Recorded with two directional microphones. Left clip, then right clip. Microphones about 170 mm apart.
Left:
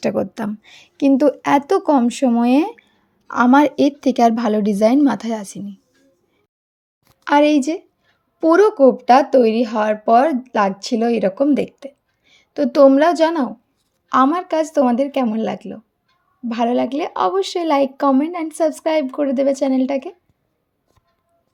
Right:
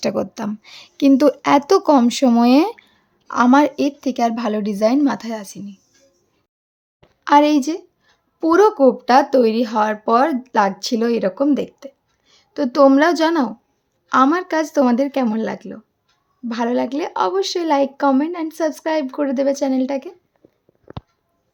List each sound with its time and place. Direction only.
0.0 s a woman's voice: centre (ahead or behind)
7.3 s speech: 5° left (ahead or behind)
12.9 s speech: 5° right (ahead or behind)